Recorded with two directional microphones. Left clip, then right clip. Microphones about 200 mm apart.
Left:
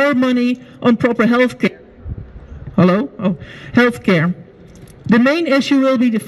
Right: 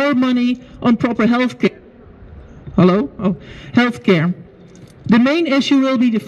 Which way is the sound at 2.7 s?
15° left (ahead or behind).